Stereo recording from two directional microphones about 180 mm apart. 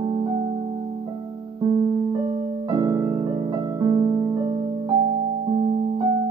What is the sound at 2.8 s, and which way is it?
Music, 20° right (ahead or behind).